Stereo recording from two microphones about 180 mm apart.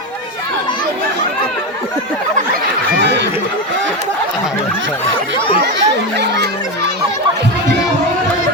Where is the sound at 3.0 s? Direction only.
75° right (ahead or behind).